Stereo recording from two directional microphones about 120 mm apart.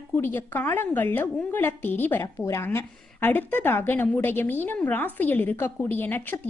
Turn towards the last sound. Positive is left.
turn(degrees=15)  # may be behind; listen again after turning